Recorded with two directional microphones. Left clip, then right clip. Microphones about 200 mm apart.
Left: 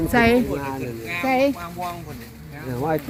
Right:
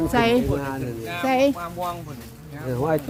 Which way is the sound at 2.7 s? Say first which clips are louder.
Right 1 dB; 60° right (ahead or behind).